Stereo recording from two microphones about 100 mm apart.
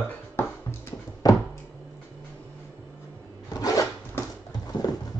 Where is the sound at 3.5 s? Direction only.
35° left (ahead or behind).